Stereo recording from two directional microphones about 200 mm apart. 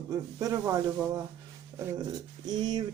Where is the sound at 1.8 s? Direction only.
20° right (ahead or behind).